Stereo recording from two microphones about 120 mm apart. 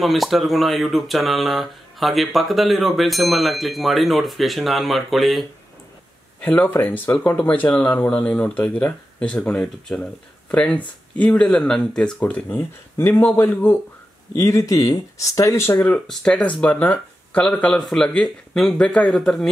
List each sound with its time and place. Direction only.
0.0 s speech: centre (ahead or behind)
6.4 s speech: 15° left (ahead or behind)
14.3 s speech: 25° left (ahead or behind)
15.9 s speech: 5° left (ahead or behind)